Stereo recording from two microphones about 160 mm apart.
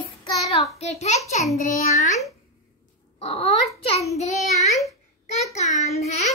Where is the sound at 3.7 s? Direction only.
20° left (ahead or behind).